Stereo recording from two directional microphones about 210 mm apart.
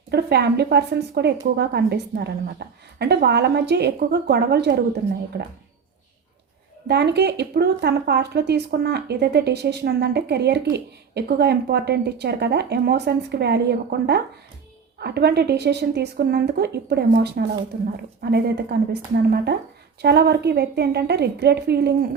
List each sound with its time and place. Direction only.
0.1 s speech: 50° right (ahead or behind)
6.8 s speech: 50° right (ahead or behind)